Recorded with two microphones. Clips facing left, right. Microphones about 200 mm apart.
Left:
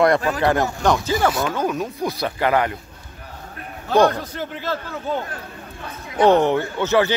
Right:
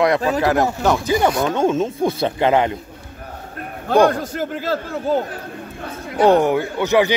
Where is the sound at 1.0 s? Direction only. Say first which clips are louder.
Right 3 dB; 20° right (ahead or behind).